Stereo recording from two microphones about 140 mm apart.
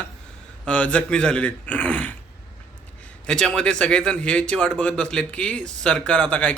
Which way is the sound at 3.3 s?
5° left (ahead or behind).